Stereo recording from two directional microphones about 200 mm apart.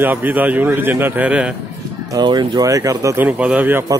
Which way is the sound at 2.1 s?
20° right (ahead or behind).